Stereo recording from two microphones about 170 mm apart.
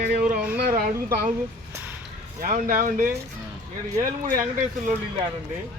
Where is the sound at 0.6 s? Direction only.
55° right (ahead or behind).